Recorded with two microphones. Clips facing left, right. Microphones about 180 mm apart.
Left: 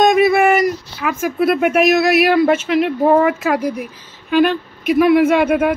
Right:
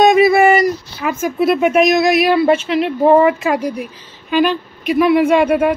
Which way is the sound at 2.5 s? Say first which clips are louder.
Even; 10° left (ahead or behind).